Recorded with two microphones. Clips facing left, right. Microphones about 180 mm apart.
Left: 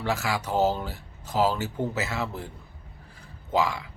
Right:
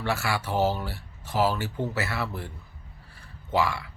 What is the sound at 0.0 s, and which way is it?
Speech, 15° left (ahead or behind).